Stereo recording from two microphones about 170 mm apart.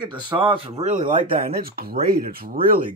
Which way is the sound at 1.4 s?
60° right (ahead or behind).